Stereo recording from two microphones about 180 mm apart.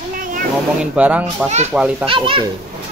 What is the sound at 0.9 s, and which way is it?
Speech, 10° right (ahead or behind).